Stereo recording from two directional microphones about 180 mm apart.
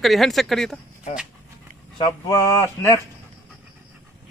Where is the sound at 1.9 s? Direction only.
25° left (ahead or behind).